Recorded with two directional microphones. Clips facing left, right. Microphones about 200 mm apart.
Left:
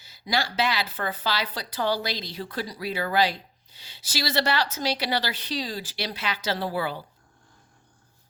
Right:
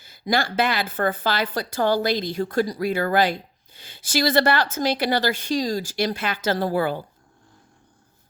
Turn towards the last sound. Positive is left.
turn(degrees=-50)  # may be behind; listen again after turning